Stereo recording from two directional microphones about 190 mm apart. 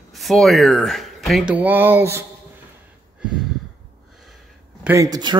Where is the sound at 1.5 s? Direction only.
10° right (ahead or behind).